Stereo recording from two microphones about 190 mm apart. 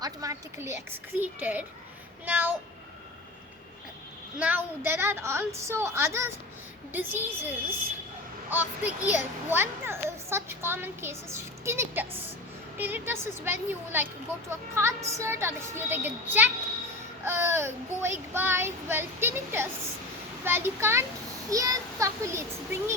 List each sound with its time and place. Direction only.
0.0 s a child's voice: 20° right (ahead or behind)
4.4 s a child's voice: 10° right (ahead or behind)
8.4 s a child's voice: 10° right (ahead or behind)